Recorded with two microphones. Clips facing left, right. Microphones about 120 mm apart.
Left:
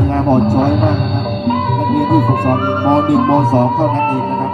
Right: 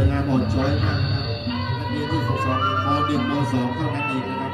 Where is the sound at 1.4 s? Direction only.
50° left (ahead or behind).